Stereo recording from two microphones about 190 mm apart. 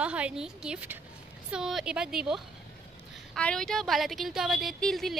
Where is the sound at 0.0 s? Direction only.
5° right (ahead or behind).